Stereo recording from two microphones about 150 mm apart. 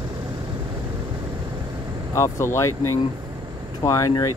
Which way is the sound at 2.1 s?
20° left (ahead or behind).